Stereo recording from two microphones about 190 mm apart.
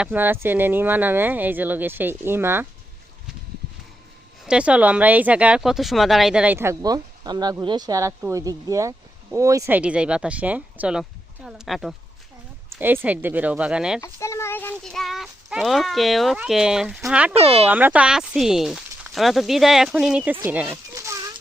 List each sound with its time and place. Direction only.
0.0 s speech: 10° right (ahead or behind)
4.4 s speech: 5° right (ahead or behind)
14.0 s speech: 15° left (ahead or behind); by 17.3 s 5° right (ahead or behind)
17.3 s speech: 30° right (ahead or behind)
17.7 s speech: 10° right (ahead or behind)
20.4 s a sound: 10° right (ahead or behind)